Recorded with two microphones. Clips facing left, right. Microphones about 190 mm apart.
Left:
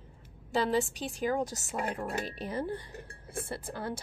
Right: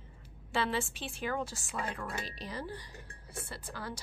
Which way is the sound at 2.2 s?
55° left (ahead or behind).